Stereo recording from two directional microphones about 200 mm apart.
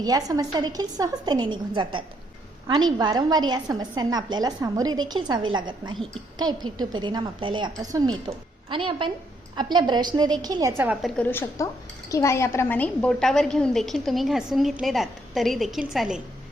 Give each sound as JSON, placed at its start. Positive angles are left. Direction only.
{"t": 0.0, "sound": "a woman's voice", "side_deg": -20}
{"t": 11.0, "sound": "speech", "side_deg": 10}